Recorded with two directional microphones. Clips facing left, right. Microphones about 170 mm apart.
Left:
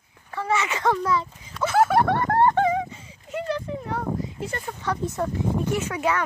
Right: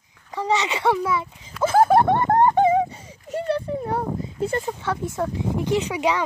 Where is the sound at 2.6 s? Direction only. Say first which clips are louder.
Right 5 dB; 35° right (ahead or behind).